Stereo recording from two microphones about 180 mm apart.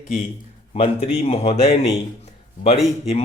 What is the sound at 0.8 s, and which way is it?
A man's voice, 35° left (ahead or behind).